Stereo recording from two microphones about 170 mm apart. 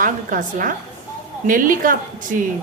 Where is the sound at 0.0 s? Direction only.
55° right (ahead or behind).